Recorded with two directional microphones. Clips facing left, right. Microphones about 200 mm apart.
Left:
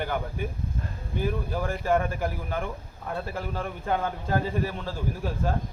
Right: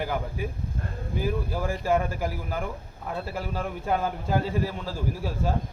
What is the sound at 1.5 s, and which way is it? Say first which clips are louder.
A man's voice: even; 5° right (ahead or behind).